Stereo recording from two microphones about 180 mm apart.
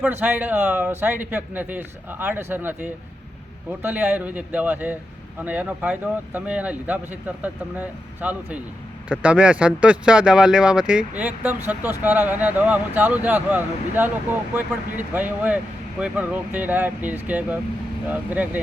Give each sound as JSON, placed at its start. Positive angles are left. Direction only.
{"t": 0.0, "sound": "speech", "side_deg": -10}